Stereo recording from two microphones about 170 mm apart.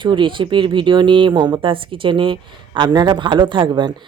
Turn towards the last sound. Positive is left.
turn(degrees=-25)  # may be behind; listen again after turning